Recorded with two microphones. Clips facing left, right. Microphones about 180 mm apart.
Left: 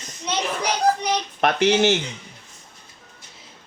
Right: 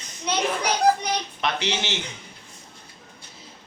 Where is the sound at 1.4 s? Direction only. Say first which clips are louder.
Left 13 dB; 50° left (ahead or behind).